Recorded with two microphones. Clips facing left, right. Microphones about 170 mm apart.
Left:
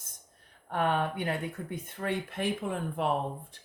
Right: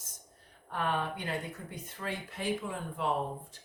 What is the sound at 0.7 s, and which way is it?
Speech, 60° left (ahead or behind).